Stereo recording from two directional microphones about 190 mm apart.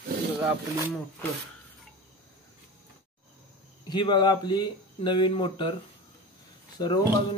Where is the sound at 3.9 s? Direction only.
25° left (ahead or behind).